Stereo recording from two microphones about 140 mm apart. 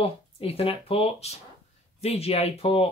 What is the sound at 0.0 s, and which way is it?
Speech, 45° left (ahead or behind).